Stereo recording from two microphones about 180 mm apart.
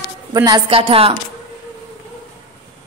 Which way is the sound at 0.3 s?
20° right (ahead or behind).